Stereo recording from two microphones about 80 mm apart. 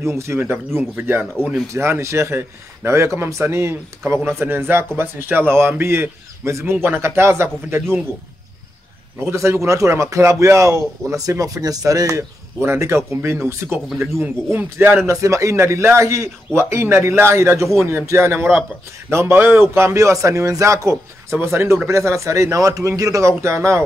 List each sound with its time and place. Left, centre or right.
0.0 s a man's voice: right
9.2 s a man's voice: right
12.6 s a man's voice: right
15.1 s a man's voice: right